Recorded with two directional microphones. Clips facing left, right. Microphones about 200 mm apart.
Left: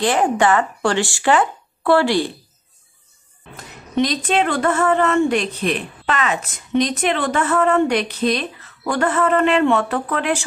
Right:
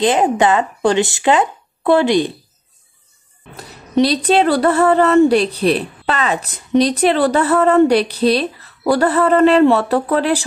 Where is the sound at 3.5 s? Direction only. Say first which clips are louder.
Right 5 dB; 35° right (ahead or behind).